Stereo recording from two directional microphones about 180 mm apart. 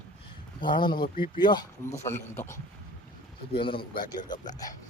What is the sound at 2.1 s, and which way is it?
Speech, 15° left (ahead or behind).